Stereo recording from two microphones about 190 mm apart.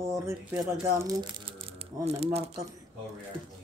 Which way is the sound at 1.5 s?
30° right (ahead or behind).